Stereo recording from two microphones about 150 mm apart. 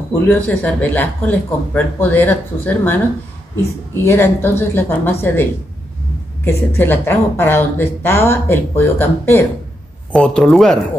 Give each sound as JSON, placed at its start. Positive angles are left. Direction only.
{"t": 0.3, "sound": "speech", "side_deg": 10}
{"t": 4.0, "sound": "speech", "side_deg": 15}
{"t": 10.1, "sound": "speech", "side_deg": 5}